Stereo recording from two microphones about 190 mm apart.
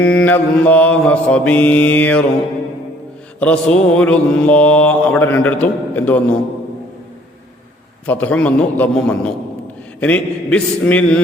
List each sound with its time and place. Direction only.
0.0 s mantra: 5° left (ahead or behind)
3.4 s mantra: 5° left (ahead or behind)
8.0 s mantra: 10° left (ahead or behind)